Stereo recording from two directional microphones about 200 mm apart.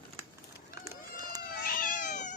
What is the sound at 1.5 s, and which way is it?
Cat, 45° left (ahead or behind).